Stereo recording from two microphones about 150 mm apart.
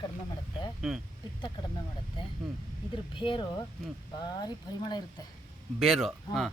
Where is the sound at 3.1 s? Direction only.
35° left (ahead or behind).